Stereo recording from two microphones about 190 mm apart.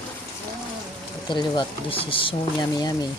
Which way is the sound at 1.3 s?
25° left (ahead or behind).